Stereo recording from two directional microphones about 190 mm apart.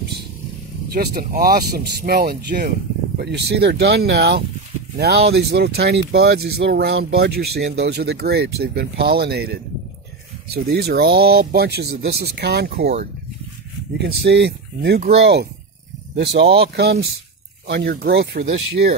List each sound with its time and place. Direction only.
0.9 s speech: 55° right (ahead or behind)
3.2 s speech: 60° right (ahead or behind)
13.9 s speech: 60° right (ahead or behind)
16.2 s speech: 65° right (ahead or behind)